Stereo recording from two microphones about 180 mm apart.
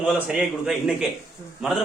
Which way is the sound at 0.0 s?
5° right (ahead or behind).